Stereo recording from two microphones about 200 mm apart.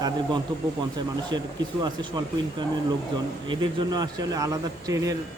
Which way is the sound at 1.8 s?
20° right (ahead or behind).